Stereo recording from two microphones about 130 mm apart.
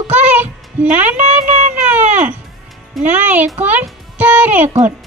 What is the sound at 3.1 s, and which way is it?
Speech, 15° right (ahead or behind).